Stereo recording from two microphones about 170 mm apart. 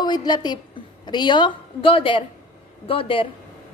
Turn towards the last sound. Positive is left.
turn(degrees=30)  # may be behind; listen again after turning